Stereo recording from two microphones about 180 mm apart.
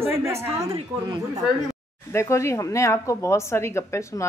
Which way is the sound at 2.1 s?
15° left (ahead or behind).